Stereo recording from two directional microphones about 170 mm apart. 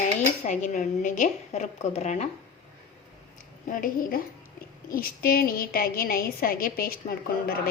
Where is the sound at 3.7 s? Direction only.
50° left (ahead or behind).